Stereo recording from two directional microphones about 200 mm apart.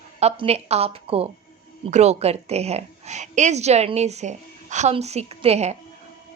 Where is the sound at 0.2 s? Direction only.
30° right (ahead or behind).